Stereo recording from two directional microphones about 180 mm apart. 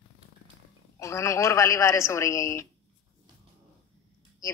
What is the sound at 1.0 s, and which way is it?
A man's voice, 15° left (ahead or behind).